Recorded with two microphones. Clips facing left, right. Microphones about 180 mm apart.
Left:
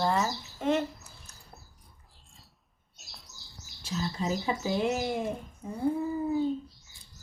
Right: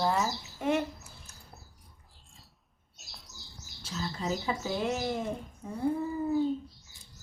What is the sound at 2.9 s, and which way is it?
Bird flight, centre (ahead or behind).